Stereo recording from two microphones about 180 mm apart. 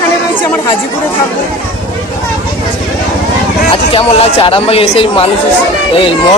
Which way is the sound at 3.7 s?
35° left (ahead or behind).